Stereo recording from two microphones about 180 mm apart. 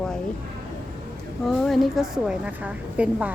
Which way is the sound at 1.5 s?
Centre (ahead or behind).